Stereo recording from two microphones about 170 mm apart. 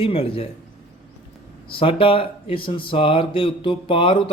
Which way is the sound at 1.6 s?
30° left (ahead or behind).